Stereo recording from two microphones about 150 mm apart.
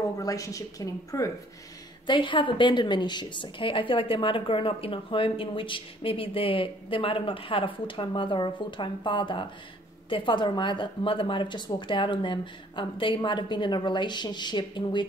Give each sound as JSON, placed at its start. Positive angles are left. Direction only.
{"t": 0.2, "sound": "speech", "side_deg": 20}
{"t": 2.0, "sound": "a woman's voice", "side_deg": 35}